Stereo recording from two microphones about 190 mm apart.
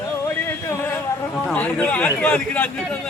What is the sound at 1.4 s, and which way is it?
A man's voice, 5° left (ahead or behind).